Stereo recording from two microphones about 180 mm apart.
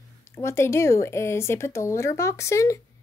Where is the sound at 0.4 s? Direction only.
15° left (ahead or behind).